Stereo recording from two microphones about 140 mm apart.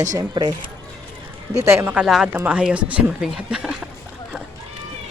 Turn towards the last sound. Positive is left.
turn(degrees=-5)  # may be behind; listen again after turning